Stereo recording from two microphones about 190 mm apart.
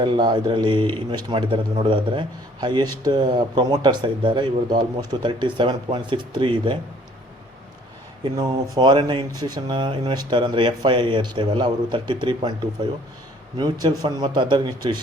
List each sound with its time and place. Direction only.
0.0 s speech: 25° right (ahead or behind)
8.2 s speech: 20° right (ahead or behind)
13.6 s speech: 20° right (ahead or behind)